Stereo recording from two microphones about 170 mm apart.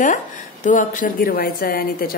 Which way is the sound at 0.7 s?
50° left (ahead or behind).